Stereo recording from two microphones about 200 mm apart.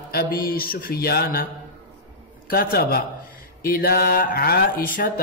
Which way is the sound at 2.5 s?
50° left (ahead or behind).